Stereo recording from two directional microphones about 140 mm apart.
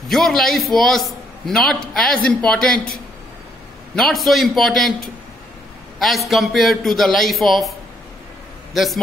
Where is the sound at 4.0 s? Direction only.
Centre (ahead or behind).